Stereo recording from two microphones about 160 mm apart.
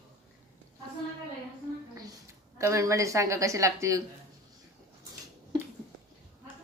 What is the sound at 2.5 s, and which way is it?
A woman's voice, 20° right (ahead or behind).